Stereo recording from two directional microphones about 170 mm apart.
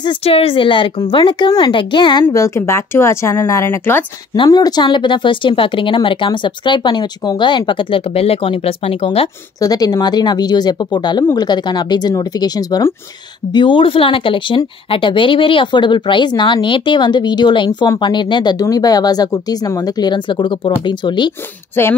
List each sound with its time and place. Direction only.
0.0 s speech: 30° left (ahead or behind)
2.2 s speech: 20° left (ahead or behind)
4.4 s speech: 25° left (ahead or behind)
9.6 s speech: 20° left (ahead or behind)
21.8 s speech: 15° left (ahead or behind)